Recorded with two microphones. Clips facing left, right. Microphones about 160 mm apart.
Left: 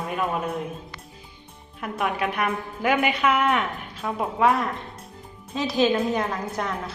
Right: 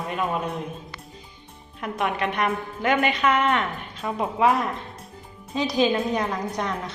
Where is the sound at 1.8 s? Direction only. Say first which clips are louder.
Even; centre (ahead or behind).